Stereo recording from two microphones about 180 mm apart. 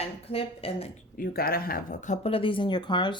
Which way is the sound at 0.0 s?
30° left (ahead or behind).